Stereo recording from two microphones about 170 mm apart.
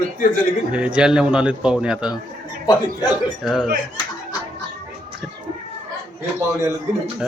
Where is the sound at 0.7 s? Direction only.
5° right (ahead or behind).